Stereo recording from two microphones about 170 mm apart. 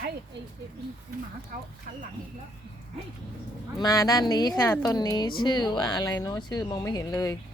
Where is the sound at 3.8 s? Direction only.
20° left (ahead or behind).